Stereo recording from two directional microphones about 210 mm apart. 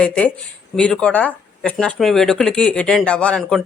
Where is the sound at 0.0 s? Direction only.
5° left (ahead or behind).